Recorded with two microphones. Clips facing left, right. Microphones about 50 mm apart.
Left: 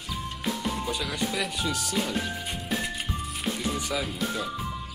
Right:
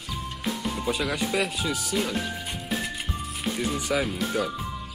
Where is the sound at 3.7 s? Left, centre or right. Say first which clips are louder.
Right 4 dB; right.